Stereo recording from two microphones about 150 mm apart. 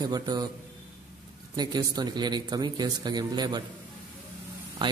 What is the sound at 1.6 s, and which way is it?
A man's voice, 25° right (ahead or behind).